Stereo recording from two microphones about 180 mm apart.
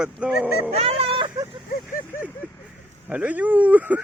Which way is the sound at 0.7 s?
35° right (ahead or behind).